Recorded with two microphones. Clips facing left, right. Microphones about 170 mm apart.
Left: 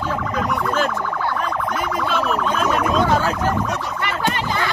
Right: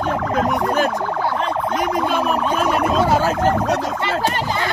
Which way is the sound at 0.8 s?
40° right (ahead or behind).